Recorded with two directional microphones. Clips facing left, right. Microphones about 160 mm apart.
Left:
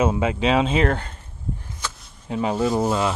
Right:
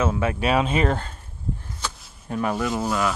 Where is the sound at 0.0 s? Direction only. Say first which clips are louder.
Left 3 dB; 20° left (ahead or behind).